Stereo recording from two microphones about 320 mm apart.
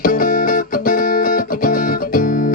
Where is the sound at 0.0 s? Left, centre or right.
Left.